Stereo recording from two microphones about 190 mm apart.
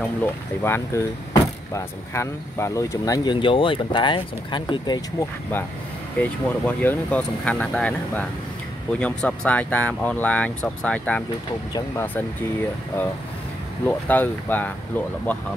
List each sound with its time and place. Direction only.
0.7 s speech: 15° left (ahead or behind)
6.1 s speech: 10° left (ahead or behind)
13.8 s speech: 10° left (ahead or behind)